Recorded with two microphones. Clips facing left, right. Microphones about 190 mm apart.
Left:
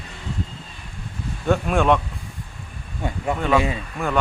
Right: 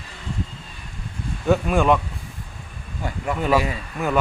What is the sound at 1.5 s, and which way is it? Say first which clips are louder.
Speech: right 1 dB; centre (ahead or behind).